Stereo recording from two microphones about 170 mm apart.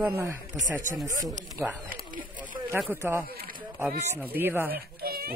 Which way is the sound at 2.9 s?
15° right (ahead or behind).